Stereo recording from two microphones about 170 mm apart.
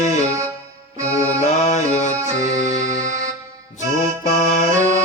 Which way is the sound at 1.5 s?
45° left (ahead or behind).